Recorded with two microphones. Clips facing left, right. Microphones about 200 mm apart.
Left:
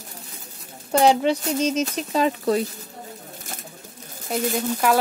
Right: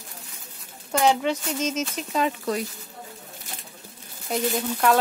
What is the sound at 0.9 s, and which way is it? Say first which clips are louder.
Speech: left 4 dB; 35° left (ahead or behind).